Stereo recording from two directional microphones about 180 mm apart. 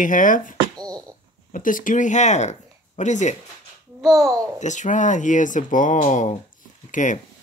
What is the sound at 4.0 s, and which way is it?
Speech, centre (ahead or behind).